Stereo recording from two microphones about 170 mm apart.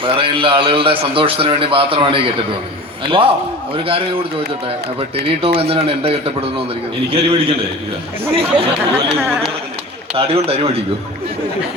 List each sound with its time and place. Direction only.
0.0 s a man's voice: 30° right (ahead or behind)
10.2 s a man's voice: 35° right (ahead or behind)